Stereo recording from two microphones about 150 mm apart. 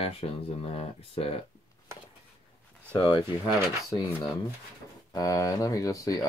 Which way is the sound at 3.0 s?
30° left (ahead or behind).